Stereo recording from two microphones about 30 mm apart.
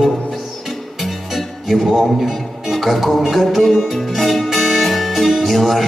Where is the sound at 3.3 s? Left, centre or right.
Centre.